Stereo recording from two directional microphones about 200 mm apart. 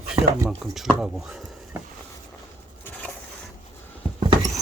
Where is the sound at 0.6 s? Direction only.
Centre (ahead or behind).